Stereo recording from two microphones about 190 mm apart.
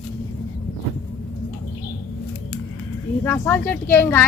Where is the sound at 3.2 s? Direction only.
10° left (ahead or behind).